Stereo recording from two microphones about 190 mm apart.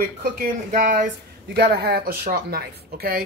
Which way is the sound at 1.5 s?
55° right (ahead or behind).